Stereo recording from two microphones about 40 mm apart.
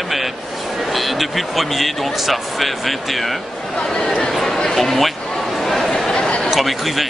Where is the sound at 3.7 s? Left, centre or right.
Centre.